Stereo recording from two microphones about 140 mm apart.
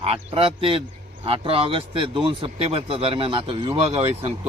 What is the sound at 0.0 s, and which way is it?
Speech, 45° right (ahead or behind).